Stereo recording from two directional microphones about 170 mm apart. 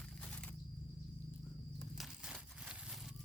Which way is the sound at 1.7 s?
Centre (ahead or behind).